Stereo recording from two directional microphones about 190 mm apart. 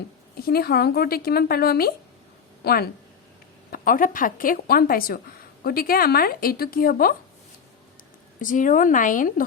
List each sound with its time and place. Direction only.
0.4 s a woman's voice: 55° left (ahead or behind)
8.4 s a woman's voice: 45° left (ahead or behind)